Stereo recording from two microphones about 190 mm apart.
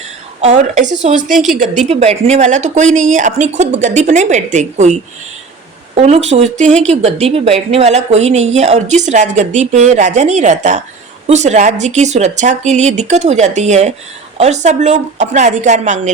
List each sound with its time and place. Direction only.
0.4 s speech: 40° right (ahead or behind)
1.3 s a woman's voice: centre (ahead or behind)
1.9 s a woman's voice: 35° right (ahead or behind)